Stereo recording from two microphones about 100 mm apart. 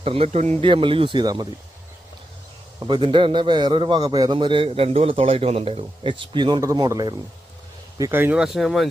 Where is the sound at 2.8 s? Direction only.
50° right (ahead or behind).